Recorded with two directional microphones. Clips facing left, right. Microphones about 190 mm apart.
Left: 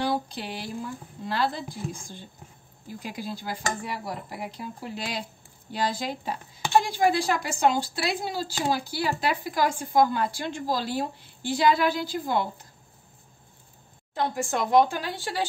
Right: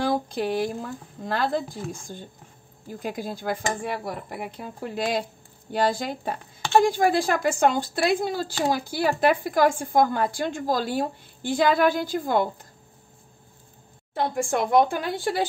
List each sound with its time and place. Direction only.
0.1 s a woman's voice: 50° right (ahead or behind)
14.4 s speech: 55° right (ahead or behind)